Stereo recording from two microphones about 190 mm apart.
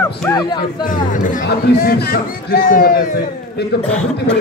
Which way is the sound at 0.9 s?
45° left (ahead or behind).